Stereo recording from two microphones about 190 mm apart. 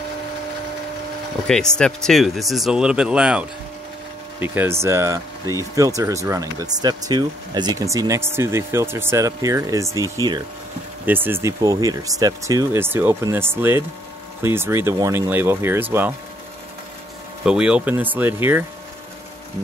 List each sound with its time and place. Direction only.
1.5 s speech: 5° left (ahead or behind); by 16.1 s 10° right (ahead or behind)
17.5 s speech: 5° right (ahead or behind)